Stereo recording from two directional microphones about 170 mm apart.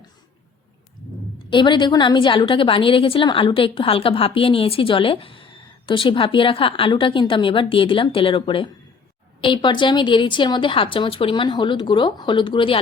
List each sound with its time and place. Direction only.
1.5 s a woman's voice: 25° left (ahead or behind)